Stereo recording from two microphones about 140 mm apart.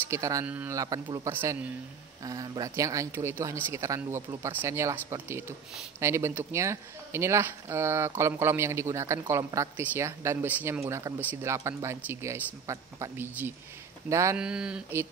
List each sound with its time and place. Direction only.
0.1 s speech: 20° right (ahead or behind)
1.3 s speech: 15° right (ahead or behind)
2.2 s speech: 30° right (ahead or behind)
14.4 s speech: 5° right (ahead or behind)